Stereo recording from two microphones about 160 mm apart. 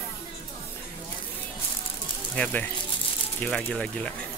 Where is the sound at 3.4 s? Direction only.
5° left (ahead or behind).